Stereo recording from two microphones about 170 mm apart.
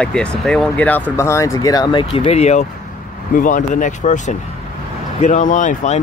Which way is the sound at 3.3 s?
50° left (ahead or behind).